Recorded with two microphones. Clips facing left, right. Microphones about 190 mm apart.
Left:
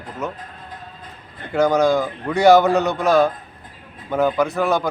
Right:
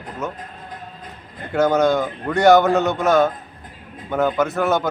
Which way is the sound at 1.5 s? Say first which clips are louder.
Even; centre (ahead or behind).